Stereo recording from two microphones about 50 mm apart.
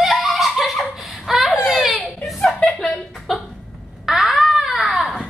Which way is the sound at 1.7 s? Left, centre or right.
Centre.